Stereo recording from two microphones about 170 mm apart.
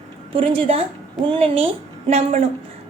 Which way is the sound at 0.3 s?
35° right (ahead or behind).